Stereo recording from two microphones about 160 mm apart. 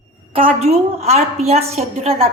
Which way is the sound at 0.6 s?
40° right (ahead or behind).